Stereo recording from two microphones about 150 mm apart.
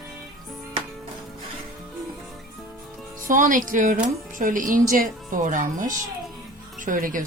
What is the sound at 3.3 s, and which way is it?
Speech, 60° right (ahead or behind).